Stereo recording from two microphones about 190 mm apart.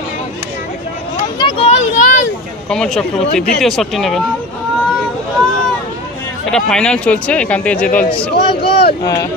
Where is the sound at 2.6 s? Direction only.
5° left (ahead or behind).